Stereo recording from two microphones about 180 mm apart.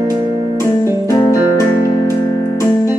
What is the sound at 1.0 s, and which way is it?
Music, 20° left (ahead or behind).